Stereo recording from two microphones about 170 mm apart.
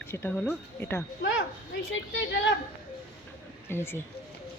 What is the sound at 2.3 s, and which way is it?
Speech, 90° left.